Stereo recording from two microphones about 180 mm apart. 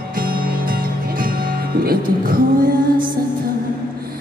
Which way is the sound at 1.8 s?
55° right (ahead or behind).